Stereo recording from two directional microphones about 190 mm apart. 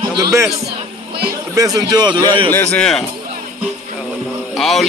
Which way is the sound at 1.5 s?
20° right (ahead or behind).